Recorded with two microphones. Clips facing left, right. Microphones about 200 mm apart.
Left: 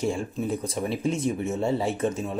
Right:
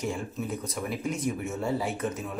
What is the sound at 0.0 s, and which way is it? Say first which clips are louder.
Speech: left 5 dB; 30° left (ahead or behind).